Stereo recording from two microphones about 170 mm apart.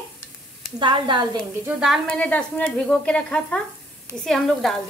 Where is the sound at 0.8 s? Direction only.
30° right (ahead or behind).